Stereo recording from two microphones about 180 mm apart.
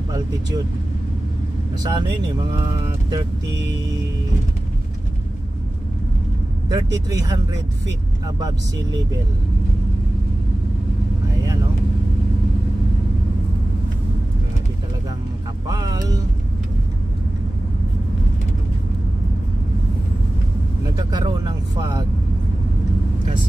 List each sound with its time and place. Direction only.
1.8 s speech: 25° right (ahead or behind)
6.7 s speech: 20° right (ahead or behind)
15.7 s speech: 25° right (ahead or behind)
21.1 s speech: 25° right (ahead or behind)